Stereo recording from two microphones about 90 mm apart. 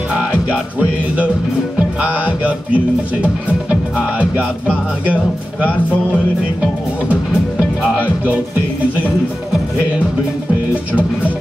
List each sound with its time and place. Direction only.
0.3 s music: 15° right (ahead or behind)
10.7 s music: 15° right (ahead or behind)